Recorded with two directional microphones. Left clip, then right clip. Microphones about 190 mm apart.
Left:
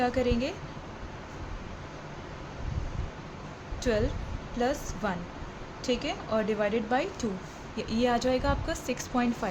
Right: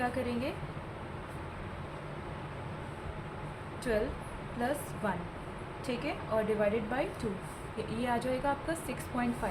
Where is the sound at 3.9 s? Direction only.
70° left (ahead or behind).